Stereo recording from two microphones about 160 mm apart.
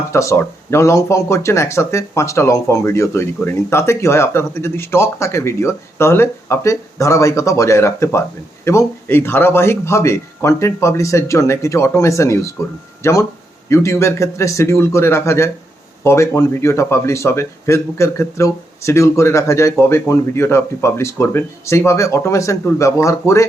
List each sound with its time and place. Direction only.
0.1 s speech: 20° left (ahead or behind)